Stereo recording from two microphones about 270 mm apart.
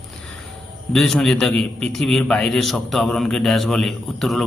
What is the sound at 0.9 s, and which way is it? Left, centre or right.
A man's voice, centre.